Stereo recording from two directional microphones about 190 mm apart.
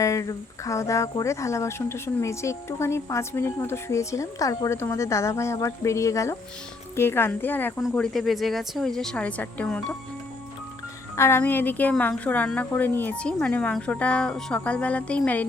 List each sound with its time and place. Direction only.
0.0 s speech: 15° left (ahead or behind)
11.2 s speech: 10° left (ahead or behind)